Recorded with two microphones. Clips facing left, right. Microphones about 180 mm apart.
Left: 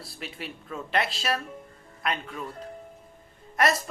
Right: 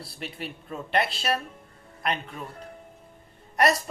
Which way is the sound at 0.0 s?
Centre (ahead or behind).